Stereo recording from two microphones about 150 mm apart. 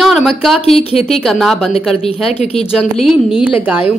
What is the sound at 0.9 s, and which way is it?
Speech, 40° left (ahead or behind).